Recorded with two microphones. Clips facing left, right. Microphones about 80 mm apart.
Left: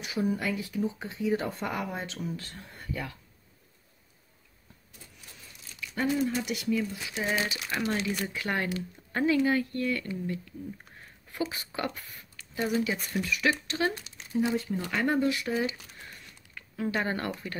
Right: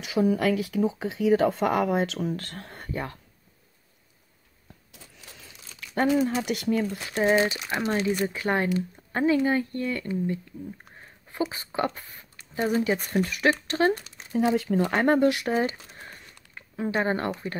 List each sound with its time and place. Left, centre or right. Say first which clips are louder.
0.3 s speech: right 7 dB; right
2.9 s speech: right 4 dB; right
5.2 s crumpling: right 5 dB; right
5.8 s a sound: left 3 dB; right
6.2 s speech: right 4 dB; right
7.2 s speech: right 8 dB; right
14.4 s speech: right 6 dB; right
14.8 s speech: right 7 dB; right
15.5 s a sound: right 4 dB; right
16.5 s speech: right 4 dB; right